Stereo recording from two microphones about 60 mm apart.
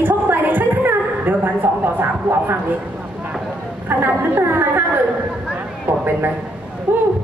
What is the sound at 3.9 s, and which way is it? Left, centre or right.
Speech, right.